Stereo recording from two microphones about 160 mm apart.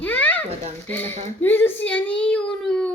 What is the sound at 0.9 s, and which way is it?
Child singing, 10° left (ahead or behind).